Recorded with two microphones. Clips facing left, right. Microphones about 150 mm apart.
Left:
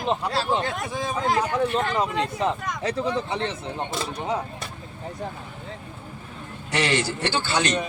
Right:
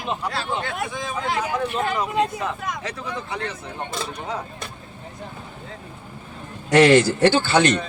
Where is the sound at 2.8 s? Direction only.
30° left (ahead or behind).